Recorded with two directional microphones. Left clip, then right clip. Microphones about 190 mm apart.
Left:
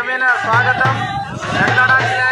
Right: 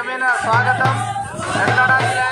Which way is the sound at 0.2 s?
55° right (ahead or behind).